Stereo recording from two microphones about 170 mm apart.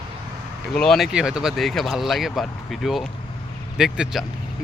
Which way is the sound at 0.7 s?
5° left (ahead or behind).